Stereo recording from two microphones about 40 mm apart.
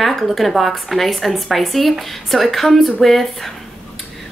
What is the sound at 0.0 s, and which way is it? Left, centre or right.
Speech, centre.